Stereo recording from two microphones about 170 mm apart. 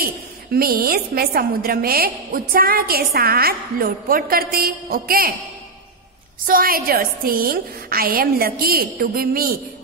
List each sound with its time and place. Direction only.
0.0 s a woman's voice: 60° right (ahead or behind)
6.4 s a woman's voice: 55° right (ahead or behind)